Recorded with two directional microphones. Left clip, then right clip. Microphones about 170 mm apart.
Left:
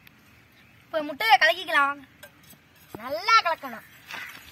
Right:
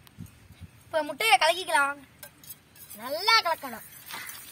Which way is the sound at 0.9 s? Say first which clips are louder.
Left 2 dB; 15° right (ahead or behind).